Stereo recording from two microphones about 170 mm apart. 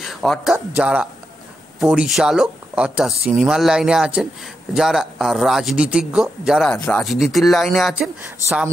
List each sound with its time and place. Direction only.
0.0 s speech: centre (ahead or behind)
8.4 s speech: 20° left (ahead or behind)